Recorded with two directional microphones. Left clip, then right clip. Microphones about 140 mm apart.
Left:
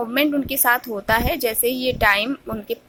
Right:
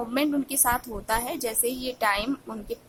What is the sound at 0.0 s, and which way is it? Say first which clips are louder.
A woman's voice: left 6 dB; 15° left (ahead or behind).